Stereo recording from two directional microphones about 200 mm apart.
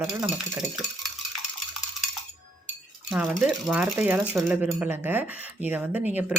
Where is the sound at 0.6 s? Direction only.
Centre (ahead or behind).